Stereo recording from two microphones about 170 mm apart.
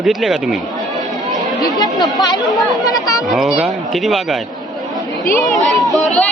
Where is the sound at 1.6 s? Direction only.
25° left (ahead or behind).